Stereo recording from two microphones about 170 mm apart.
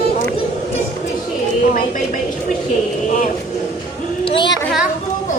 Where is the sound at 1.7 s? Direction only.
50° left (ahead or behind).